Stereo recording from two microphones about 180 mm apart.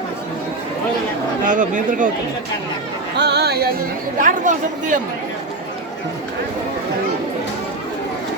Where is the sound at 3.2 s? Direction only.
70° right (ahead or behind).